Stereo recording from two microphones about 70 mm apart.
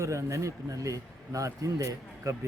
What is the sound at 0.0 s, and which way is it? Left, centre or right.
Speech, right.